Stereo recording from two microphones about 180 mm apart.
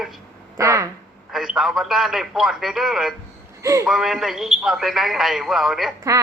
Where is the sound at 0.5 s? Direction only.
15° right (ahead or behind).